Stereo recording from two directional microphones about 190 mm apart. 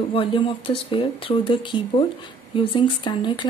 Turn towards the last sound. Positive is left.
turn(degrees=25)  # may be behind; listen again after turning